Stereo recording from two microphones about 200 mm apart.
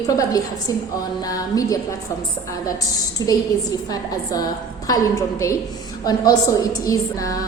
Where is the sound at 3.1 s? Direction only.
20° left (ahead or behind).